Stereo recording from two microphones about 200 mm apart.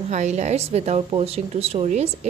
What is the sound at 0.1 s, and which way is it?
A woman's voice, 35° right (ahead or behind).